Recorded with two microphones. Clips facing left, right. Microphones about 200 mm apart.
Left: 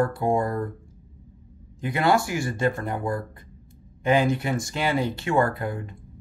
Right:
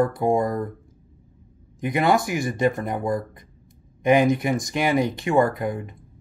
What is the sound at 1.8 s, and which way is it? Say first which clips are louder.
Speech: right 2 dB; 15° right (ahead or behind).